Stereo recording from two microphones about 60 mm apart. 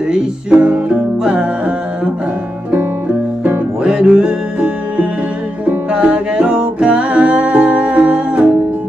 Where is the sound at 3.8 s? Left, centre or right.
Centre.